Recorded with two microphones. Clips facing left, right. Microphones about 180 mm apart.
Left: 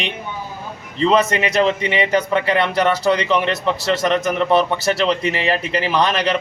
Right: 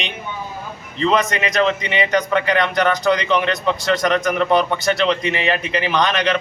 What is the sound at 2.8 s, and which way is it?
A man's voice, 5° left (ahead or behind).